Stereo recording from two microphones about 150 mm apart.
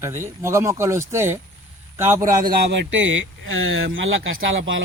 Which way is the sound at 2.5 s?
90° right.